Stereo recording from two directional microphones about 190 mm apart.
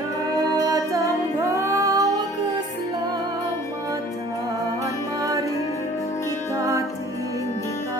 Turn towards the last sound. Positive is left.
turn(degrees=-15)  # may be behind; listen again after turning